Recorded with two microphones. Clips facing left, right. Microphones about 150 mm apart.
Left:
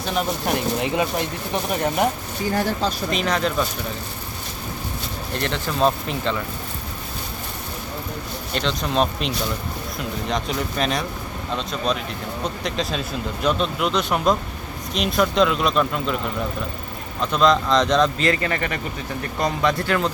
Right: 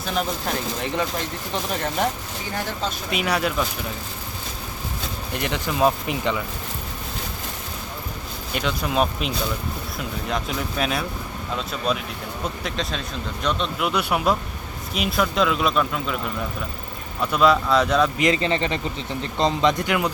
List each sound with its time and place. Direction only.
0.4 s speech: 15° left (ahead or behind)
3.1 s speech: 10° right (ahead or behind)
5.3 s speech: 15° right (ahead or behind)
8.5 s speech: 10° right (ahead or behind)
17.2 s speech: 5° right (ahead or behind)
18.3 s speech: 20° right (ahead or behind)